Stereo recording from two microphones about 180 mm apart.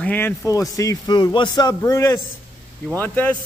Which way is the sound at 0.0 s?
10° left (ahead or behind).